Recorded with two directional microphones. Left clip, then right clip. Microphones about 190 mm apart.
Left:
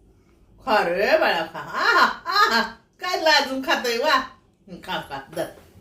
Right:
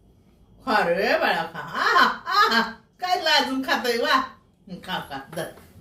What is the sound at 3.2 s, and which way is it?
Speech, 30° left (ahead or behind).